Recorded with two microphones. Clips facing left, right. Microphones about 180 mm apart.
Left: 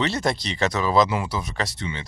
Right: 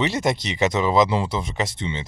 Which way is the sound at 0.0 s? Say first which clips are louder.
Right 2 dB; 15° right (ahead or behind).